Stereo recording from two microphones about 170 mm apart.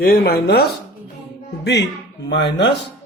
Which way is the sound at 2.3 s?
90° left.